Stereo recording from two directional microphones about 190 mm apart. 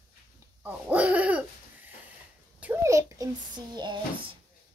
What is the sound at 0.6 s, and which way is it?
Owl, 10° right (ahead or behind).